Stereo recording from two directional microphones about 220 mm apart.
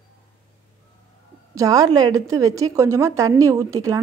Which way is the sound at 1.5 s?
15° right (ahead or behind).